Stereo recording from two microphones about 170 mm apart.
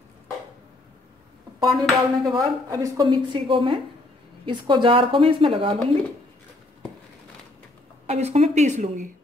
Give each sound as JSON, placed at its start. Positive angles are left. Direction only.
{"t": 1.6, "sound": "a sound", "side_deg": 0}
{"t": 2.7, "sound": "a woman's voice", "side_deg": -20}
{"t": 8.1, "sound": "speech", "side_deg": -40}